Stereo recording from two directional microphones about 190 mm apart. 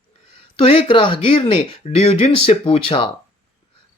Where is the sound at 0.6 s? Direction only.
30° left (ahead or behind).